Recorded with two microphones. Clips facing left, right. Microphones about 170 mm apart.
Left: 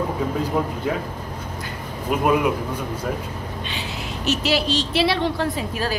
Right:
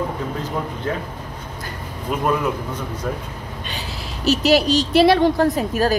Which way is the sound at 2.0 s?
10° left (ahead or behind).